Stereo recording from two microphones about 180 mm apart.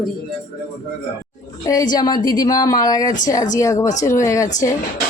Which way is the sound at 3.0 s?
45° left (ahead or behind).